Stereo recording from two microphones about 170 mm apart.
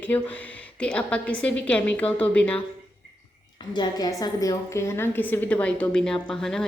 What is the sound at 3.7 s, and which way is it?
A woman's voice, 25° left (ahead or behind).